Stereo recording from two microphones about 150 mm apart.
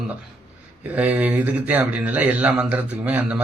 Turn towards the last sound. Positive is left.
turn(degrees=-10)  # may be behind; listen again after turning